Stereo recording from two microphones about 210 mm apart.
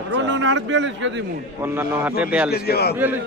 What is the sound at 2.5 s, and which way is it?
Speech, 50° left (ahead or behind).